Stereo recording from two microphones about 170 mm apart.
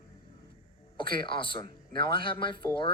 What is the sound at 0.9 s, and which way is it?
Speech, 30° left (ahead or behind).